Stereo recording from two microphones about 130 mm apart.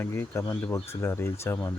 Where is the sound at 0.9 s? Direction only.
20° left (ahead or behind).